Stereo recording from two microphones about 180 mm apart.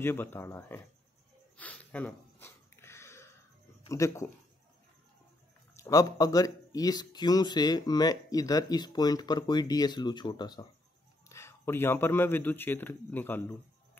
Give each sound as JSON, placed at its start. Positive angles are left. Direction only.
{"t": 0.0, "sound": "a man's voice", "side_deg": 10}
{"t": 1.6, "sound": "a sound", "side_deg": 10}
{"t": 3.9, "sound": "a man's voice", "side_deg": 15}
{"t": 5.8, "sound": "a man's voice", "side_deg": 20}